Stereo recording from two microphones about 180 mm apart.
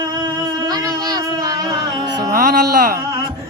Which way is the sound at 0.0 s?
20° right (ahead or behind).